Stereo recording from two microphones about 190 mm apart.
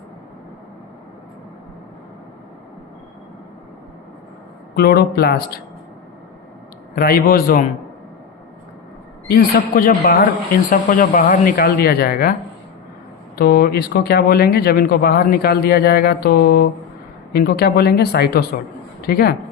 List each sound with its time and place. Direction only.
4.7 s speech: 55° left (ahead or behind)
6.9 s speech: 45° left (ahead or behind)
9.2 s speech: 50° left (ahead or behind)